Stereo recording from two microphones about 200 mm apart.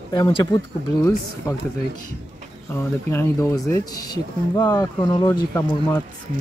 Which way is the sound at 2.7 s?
15° left (ahead or behind).